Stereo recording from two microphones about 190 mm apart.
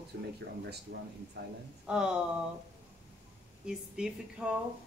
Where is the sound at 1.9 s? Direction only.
5° right (ahead or behind).